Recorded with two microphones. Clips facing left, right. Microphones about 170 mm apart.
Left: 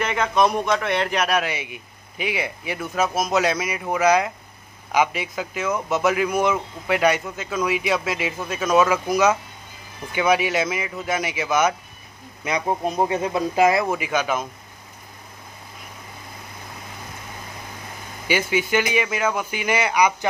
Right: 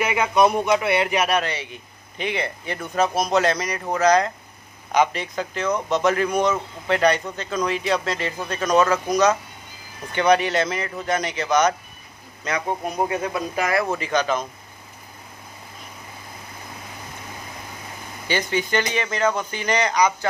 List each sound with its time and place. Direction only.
0.0 s a man's voice: 10° right (ahead or behind)
1.4 s a man's voice: 10° left (ahead or behind)
13.8 s speech: 10° left (ahead or behind)
18.2 s speech: 10° left (ahead or behind)